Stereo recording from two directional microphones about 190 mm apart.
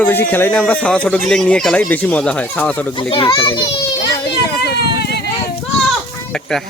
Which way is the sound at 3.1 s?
25° left (ahead or behind).